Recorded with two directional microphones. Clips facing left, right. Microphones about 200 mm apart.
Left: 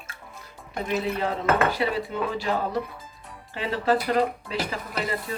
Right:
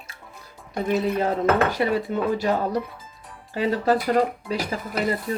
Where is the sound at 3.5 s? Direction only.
40° right (ahead or behind).